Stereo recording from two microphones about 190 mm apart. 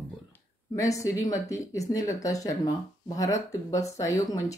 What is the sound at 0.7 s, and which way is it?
Speech, 15° left (ahead or behind).